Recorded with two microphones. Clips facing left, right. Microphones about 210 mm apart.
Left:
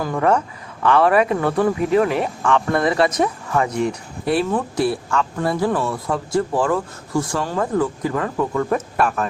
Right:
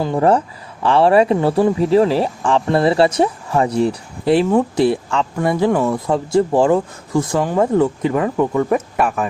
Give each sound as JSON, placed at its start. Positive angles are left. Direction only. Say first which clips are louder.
{"t": 0.0, "sound": "speech", "louder": "right 4 dB", "side_deg": -30}